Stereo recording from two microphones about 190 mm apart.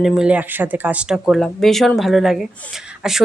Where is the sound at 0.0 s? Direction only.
Centre (ahead or behind).